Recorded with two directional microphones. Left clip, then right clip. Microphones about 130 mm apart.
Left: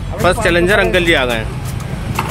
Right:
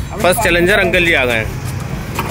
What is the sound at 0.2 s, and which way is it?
Speech, 5° right (ahead or behind).